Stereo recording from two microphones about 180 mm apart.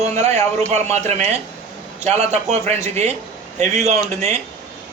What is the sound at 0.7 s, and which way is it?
A man's voice, 40° right (ahead or behind).